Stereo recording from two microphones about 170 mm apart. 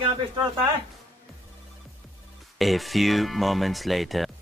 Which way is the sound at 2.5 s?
Centre (ahead or behind).